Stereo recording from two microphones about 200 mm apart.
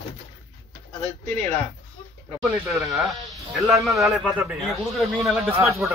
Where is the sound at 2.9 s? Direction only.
Centre (ahead or behind).